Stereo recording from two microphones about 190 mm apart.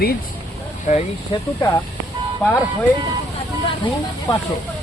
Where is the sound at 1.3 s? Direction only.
25° left (ahead or behind).